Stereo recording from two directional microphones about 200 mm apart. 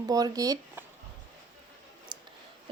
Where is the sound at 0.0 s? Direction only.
20° right (ahead or behind).